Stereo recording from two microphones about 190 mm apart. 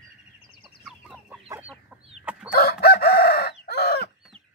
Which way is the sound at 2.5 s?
55° left (ahead or behind).